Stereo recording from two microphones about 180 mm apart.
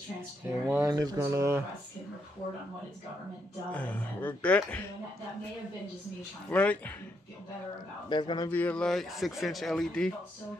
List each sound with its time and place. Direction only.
0.7 s speech: 15° right (ahead or behind)
3.7 s speech: 10° left (ahead or behind)
6.5 s speech: 5° left (ahead or behind)
8.1 s speech: 25° left (ahead or behind)
8.5 s speech: 10° left (ahead or behind)